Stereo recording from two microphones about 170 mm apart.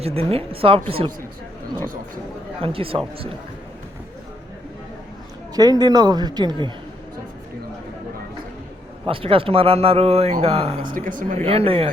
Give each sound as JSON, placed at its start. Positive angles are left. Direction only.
{"t": 0.0, "sound": "a man's voice", "side_deg": -35}
{"t": 2.6, "sound": "a man's voice", "side_deg": -35}
{"t": 5.5, "sound": "a man's voice", "side_deg": -20}
{"t": 9.0, "sound": "a man's voice", "side_deg": -30}
{"t": 10.9, "sound": "speech", "side_deg": -55}
{"t": 11.4, "sound": "a man's voice", "side_deg": -35}